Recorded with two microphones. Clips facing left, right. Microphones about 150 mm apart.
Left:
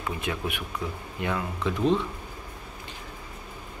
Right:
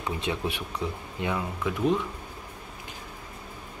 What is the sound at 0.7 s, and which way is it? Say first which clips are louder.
Speech: right 1 dB; 15° right (ahead or behind).